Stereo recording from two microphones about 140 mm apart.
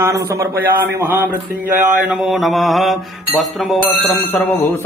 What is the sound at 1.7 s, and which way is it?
Mantra, 65° right (ahead or behind).